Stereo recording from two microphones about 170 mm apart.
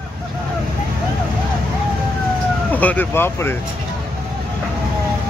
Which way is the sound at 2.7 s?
10° left (ahead or behind).